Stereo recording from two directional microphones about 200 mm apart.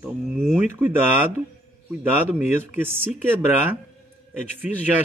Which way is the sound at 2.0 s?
10° right (ahead or behind).